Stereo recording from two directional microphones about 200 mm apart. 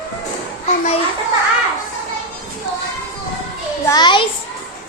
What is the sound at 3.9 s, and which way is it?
Speech, 20° left (ahead or behind).